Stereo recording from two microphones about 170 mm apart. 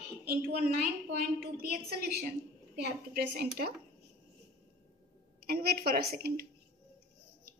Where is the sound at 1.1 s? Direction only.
60° right (ahead or behind).